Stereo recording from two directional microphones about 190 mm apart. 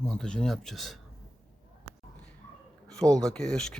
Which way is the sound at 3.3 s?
5° left (ahead or behind).